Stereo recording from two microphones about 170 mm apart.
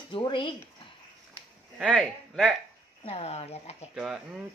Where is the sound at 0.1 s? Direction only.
30° left (ahead or behind).